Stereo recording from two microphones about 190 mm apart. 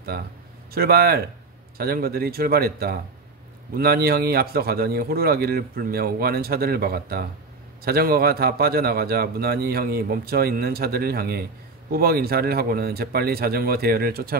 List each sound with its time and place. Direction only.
0.1 s a man's voice: 50° right (ahead or behind)